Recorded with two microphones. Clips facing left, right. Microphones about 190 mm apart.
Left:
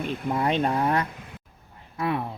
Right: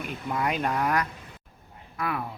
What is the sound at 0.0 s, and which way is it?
Speech, 30° left (ahead or behind).